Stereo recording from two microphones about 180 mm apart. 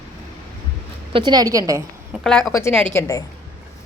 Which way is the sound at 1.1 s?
25° right (ahead or behind).